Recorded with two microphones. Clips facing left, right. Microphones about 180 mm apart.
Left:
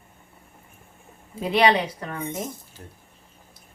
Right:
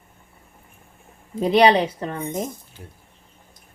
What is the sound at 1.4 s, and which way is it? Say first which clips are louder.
Speech: right 4 dB; 35° right (ahead or behind).